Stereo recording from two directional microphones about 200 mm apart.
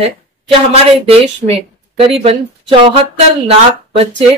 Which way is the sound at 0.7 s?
30° right (ahead or behind).